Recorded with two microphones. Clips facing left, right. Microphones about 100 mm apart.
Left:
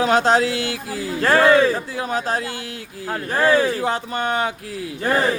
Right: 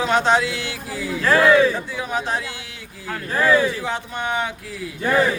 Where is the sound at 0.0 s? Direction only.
45° left (ahead or behind).